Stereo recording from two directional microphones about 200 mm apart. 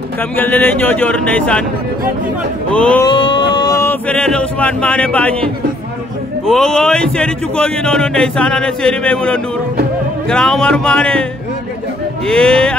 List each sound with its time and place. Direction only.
0.4 s speech: 10° left (ahead or behind)
2.7 s speech: 5° left (ahead or behind)
3.1 s speech: 25° left (ahead or behind); by 11.2 s 5° left (ahead or behind)
12.3 s speech: 5° left (ahead or behind)